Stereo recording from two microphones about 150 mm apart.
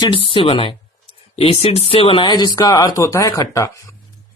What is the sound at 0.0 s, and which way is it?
Speech, 35° left (ahead or behind).